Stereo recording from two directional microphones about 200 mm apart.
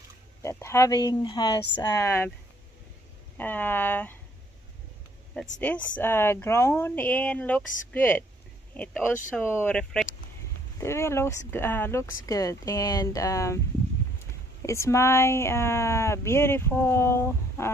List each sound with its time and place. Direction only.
0.4 s speech: 15° left (ahead or behind)
3.3 s speech: 10° left (ahead or behind)
5.6 s speech: 10° left (ahead or behind)
14.6 s speech: 15° left (ahead or behind)